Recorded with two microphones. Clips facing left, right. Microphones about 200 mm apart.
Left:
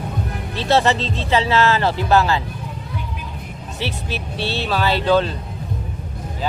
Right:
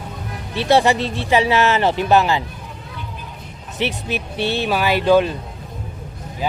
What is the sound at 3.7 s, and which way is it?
Speech, 15° right (ahead or behind).